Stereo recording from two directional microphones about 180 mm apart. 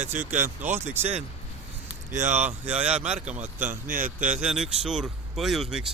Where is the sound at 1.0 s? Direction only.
35° right (ahead or behind).